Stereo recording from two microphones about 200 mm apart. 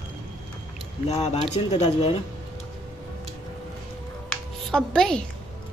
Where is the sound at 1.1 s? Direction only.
30° left (ahead or behind).